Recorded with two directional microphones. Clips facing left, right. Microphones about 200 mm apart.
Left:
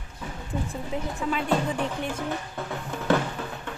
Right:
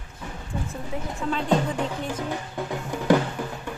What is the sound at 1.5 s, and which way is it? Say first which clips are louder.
Music: right 4 dB; 15° right (ahead or behind).